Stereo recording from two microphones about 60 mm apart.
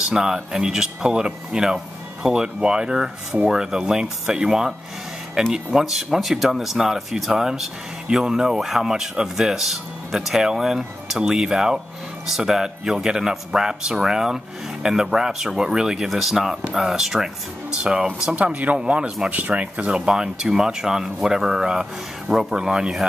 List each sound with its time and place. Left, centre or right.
0.1 s speech: centre